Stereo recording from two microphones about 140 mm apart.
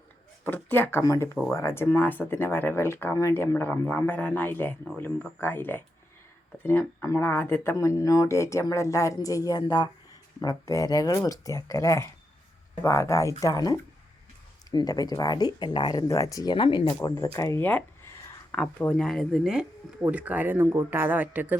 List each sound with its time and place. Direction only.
0.4 s speech: 15° left (ahead or behind); by 16.9 s 40° left (ahead or behind)
17.3 s speech: 20° left (ahead or behind); by 21.5 s 10° right (ahead or behind)